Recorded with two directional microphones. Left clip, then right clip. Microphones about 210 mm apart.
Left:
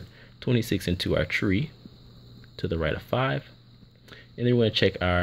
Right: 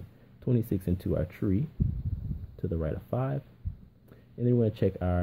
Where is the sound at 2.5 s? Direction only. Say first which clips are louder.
Left 6 dB; 5° left (ahead or behind).